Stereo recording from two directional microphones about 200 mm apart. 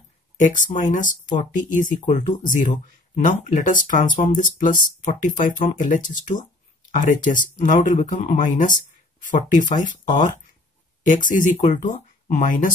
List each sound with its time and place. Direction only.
0.4 s speech: 40° left (ahead or behind)